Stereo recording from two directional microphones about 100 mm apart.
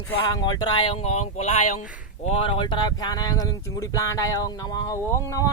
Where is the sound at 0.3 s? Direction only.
40° left (ahead or behind); by 1.6 s 90° left.